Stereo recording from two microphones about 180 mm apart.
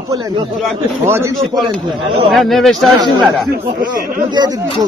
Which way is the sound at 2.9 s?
25° right (ahead or behind).